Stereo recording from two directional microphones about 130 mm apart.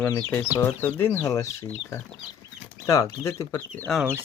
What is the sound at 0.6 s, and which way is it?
Speech, 15° left (ahead or behind).